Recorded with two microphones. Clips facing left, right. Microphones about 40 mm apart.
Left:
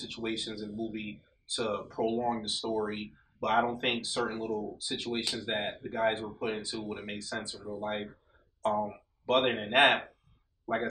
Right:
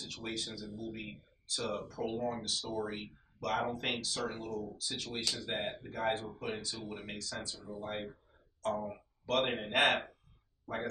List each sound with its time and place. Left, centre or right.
0.0 s speech: left